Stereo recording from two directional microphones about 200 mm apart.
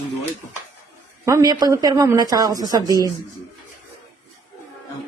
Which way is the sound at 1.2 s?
15° right (ahead or behind).